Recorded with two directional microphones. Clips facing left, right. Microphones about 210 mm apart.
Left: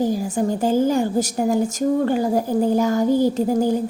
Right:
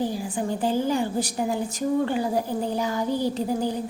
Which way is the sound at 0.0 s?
45° left (ahead or behind).